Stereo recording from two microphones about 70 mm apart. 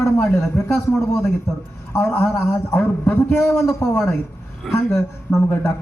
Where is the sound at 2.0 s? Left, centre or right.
Left.